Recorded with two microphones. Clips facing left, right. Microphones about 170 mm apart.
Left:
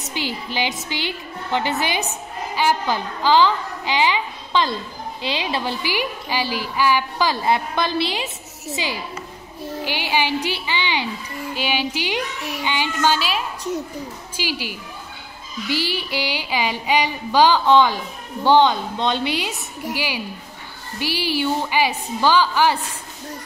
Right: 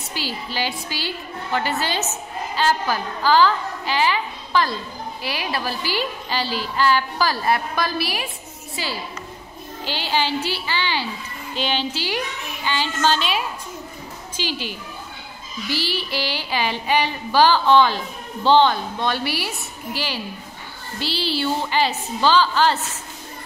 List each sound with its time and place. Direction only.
0.1 s a woman's voice: 20° left (ahead or behind)
14.3 s a woman's voice: 10° left (ahead or behind)